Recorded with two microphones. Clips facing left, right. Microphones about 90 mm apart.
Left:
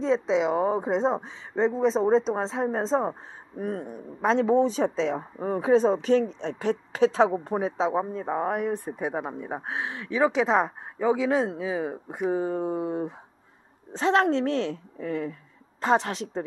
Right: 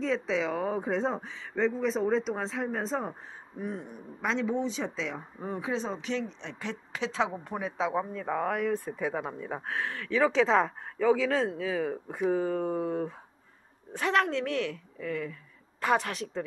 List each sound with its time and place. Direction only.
0.0 s speech: 25° left (ahead or behind)
3.5 s speech: 45° left (ahead or behind); by 13.1 s 15° left (ahead or behind)
13.9 s a woman's voice: 30° left (ahead or behind)